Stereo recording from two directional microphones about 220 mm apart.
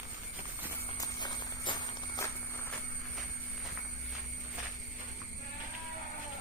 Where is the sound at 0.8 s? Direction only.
20° left (ahead or behind).